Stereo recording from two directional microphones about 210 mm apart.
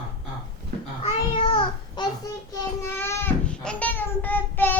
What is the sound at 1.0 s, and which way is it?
Child singing, 25° left (ahead or behind).